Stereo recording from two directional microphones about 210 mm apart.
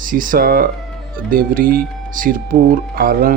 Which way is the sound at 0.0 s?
40° right (ahead or behind).